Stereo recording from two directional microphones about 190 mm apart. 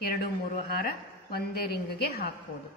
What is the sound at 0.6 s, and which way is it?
A woman's voice, 55° left (ahead or behind).